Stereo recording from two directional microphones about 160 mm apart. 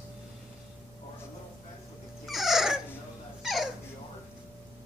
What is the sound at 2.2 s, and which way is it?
Dog, centre (ahead or behind).